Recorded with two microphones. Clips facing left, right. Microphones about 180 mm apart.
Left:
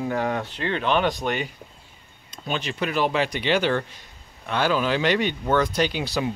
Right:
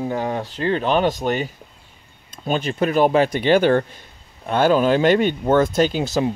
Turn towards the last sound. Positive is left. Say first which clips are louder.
# right 5 dB
turn(degrees=-40)  # may be behind; listen again after turning